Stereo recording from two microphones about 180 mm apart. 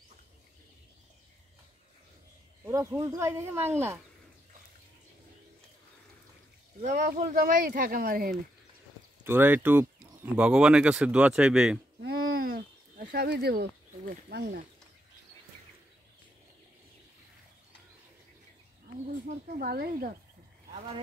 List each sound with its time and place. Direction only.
2.6 s speech: 15° right (ahead or behind)
6.8 s speech: 45° right (ahead or behind)
9.2 s speech: 10° right (ahead or behind)
12.0 s a sound: 60° right (ahead or behind)
19.4 s speech: 60° right (ahead or behind)